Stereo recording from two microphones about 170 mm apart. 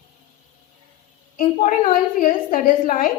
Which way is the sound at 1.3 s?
50° left (ahead or behind).